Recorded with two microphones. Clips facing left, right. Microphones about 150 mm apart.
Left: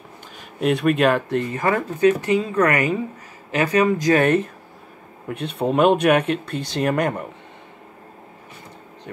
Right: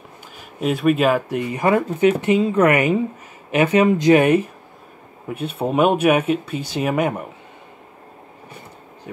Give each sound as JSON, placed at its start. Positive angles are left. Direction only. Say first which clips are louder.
{"t": 0.6, "sound": "speech", "louder": "even", "side_deg": 0}
{"t": 4.2, "sound": "speech", "louder": "right 2 dB", "side_deg": -10}